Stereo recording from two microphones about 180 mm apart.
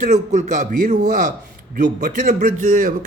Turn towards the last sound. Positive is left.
turn(degrees=-45)  # may be behind; listen again after turning